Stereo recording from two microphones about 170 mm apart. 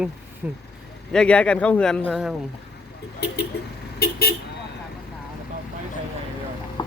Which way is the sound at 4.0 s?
65° left (ahead or behind).